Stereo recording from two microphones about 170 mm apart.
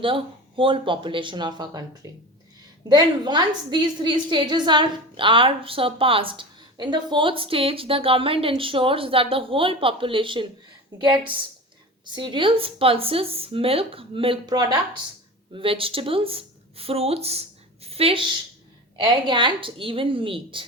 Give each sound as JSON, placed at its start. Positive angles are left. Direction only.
{"t": 0.0, "sound": "speech", "side_deg": -30}
{"t": 2.9, "sound": "a woman's voice", "side_deg": -25}